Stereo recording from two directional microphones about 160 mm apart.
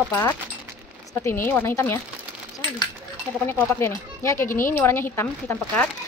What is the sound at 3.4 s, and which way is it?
Speech, 15° left (ahead or behind).